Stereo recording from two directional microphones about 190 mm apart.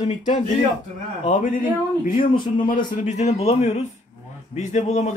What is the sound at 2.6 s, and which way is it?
A man's voice, 40° left (ahead or behind).